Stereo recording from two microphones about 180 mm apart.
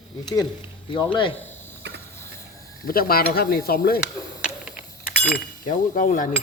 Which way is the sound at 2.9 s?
55° left (ahead or behind).